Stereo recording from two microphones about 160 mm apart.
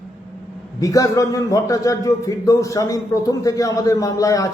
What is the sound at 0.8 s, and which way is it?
A man's voice, 20° left (ahead or behind).